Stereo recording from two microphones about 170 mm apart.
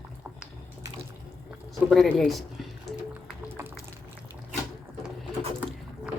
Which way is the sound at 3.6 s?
15° right (ahead or behind).